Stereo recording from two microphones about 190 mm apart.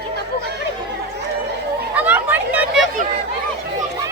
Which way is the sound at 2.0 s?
10° right (ahead or behind).